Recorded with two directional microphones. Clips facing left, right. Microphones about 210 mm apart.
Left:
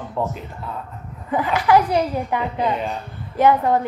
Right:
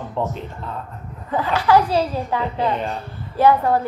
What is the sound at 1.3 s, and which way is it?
A woman's voice, 20° left (ahead or behind).